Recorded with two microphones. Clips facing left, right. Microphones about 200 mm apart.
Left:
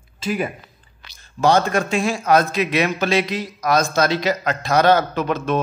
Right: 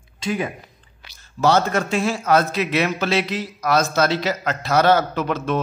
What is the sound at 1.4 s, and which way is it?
A man's voice, 20° left (ahead or behind).